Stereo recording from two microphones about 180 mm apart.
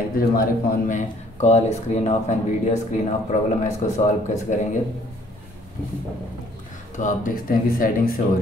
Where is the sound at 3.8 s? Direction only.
45° left (ahead or behind).